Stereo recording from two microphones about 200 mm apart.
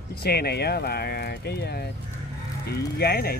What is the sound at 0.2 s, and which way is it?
Speech, 50° left (ahead or behind).